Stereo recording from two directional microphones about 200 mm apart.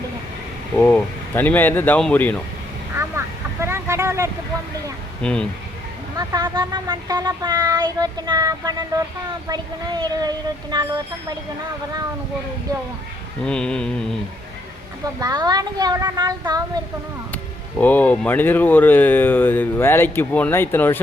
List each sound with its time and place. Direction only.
0.8 s speech: 10° left (ahead or behind)
2.9 s vehicle: 10° right (ahead or behind)
5.2 s a sound: 5° left (ahead or behind)
6.1 s speech: 15° right (ahead or behind)
13.4 s a sound: 5° left (ahead or behind)
15.2 s speech: 20° right (ahead or behind)
17.3 s speech: 10° left (ahead or behind)